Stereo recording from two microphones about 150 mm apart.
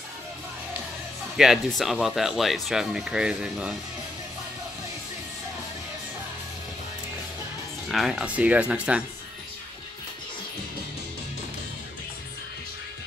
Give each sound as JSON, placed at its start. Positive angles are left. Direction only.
{"t": 1.3, "sound": "speech", "side_deg": 0}
{"t": 7.9, "sound": "speech", "side_deg": 0}